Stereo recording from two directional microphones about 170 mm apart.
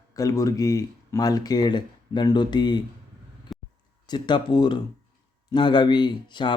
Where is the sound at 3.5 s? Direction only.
Centre (ahead or behind).